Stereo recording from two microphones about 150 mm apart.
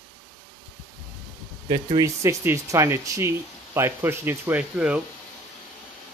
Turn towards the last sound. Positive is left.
turn(degrees=-10)  # may be behind; listen again after turning